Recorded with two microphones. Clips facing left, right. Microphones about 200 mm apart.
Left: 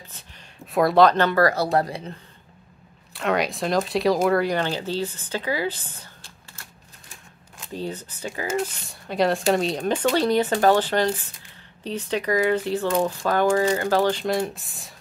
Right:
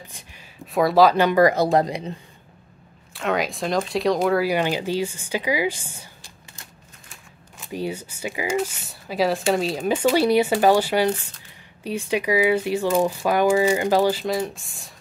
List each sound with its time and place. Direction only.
0.7 s speech: centre (ahead or behind)
3.1 s speech: centre (ahead or behind)